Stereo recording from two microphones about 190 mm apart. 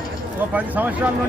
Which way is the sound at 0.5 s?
10° right (ahead or behind).